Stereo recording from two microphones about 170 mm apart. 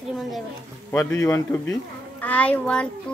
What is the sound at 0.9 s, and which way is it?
Speech, 15° left (ahead or behind).